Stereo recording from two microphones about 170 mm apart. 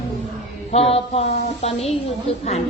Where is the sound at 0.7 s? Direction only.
35° left (ahead or behind).